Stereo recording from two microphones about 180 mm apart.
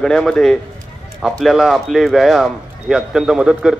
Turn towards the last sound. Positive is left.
turn(degrees=-5)  # may be behind; listen again after turning